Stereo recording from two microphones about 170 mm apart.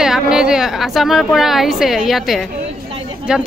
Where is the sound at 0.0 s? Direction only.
5° right (ahead or behind).